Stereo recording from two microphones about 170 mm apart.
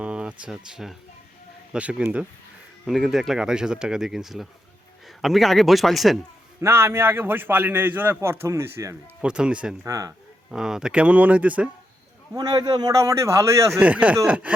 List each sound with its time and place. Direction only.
0.0 s a man's voice: 5° right (ahead or behind)
6.6 s a man's voice: 15° right (ahead or behind)
9.2 s speech: 5° right (ahead or behind)
9.8 s a man's voice: 20° right (ahead or behind)
10.5 s a man's voice: 5° right (ahead or behind)
12.3 s a man's voice: 20° right (ahead or behind)
13.7 s a man's voice: 5° right (ahead or behind)